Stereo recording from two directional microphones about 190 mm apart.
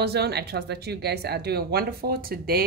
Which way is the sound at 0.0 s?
60° right (ahead or behind).